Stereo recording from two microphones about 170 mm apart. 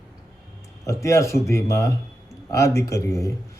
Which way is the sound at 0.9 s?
15° left (ahead or behind).